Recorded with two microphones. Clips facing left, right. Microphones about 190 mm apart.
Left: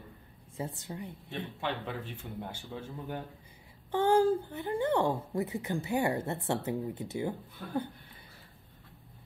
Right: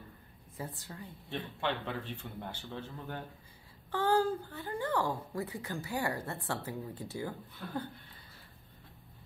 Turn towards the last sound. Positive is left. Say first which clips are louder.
# left 4 dB
turn(degrees=20)  # may be behind; listen again after turning